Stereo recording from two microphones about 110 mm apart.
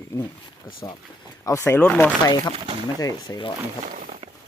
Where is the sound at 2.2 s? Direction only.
35° left (ahead or behind).